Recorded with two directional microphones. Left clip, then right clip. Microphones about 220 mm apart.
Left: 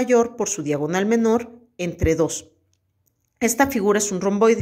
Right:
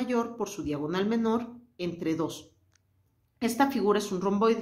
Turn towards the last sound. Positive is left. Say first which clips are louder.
# left 8 dB
turn(degrees=30)  # may be behind; listen again after turning